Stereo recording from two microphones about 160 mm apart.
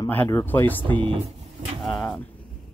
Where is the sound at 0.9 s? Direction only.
35° right (ahead or behind).